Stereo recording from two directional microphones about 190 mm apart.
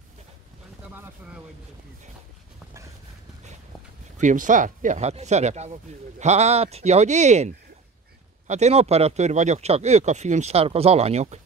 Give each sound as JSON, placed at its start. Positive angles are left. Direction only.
{"t": 0.9, "sound": "speech", "side_deg": -10}
{"t": 4.2, "sound": "speech", "side_deg": -40}